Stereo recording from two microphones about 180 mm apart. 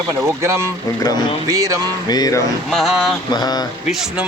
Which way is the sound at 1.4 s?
15° right (ahead or behind).